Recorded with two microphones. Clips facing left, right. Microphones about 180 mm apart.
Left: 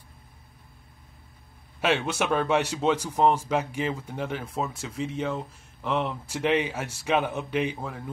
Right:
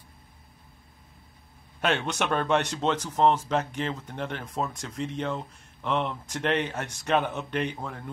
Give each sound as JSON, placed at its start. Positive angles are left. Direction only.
{"t": 1.8, "sound": "a man's voice", "side_deg": 5}